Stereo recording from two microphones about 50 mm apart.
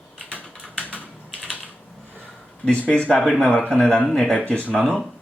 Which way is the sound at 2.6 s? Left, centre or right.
Left.